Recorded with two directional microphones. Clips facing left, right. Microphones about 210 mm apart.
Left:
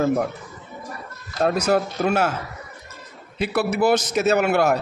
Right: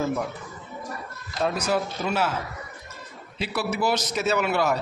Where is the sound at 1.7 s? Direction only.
50° left (ahead or behind).